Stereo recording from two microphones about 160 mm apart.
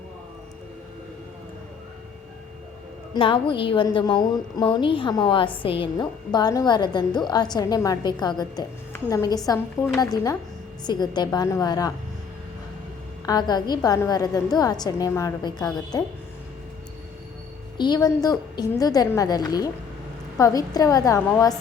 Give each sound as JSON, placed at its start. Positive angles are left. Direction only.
{"t": 3.2, "sound": "a woman's voice", "side_deg": 35}
{"t": 13.2, "sound": "a woman's voice", "side_deg": 25}
{"t": 17.7, "sound": "a woman's voice", "side_deg": 25}